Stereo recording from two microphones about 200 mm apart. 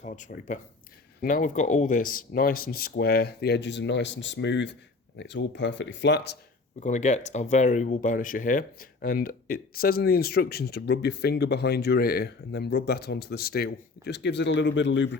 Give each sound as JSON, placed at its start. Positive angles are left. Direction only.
{"t": 0.0, "sound": "speech", "side_deg": 40}
{"t": 6.7, "sound": "speech", "side_deg": 35}